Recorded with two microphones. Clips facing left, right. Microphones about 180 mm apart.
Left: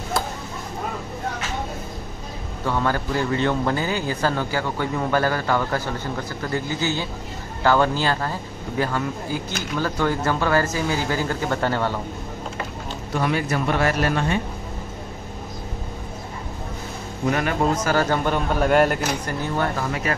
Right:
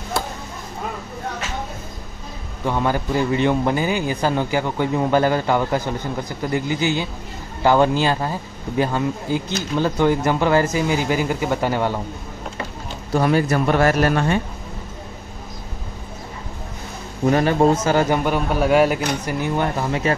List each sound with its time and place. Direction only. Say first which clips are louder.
2.6 s a man's voice: right 2 dB; 15° right (ahead or behind)
13.1 s speech: right 5 dB; 40° right (ahead or behind)
17.3 s speech: right 6 dB; 30° right (ahead or behind)
17.8 s a man's voice: right 3 dB; 15° right (ahead or behind); by 19.1 s centre (ahead or behind)
19.2 s speech: right 3 dB; 15° right (ahead or behind)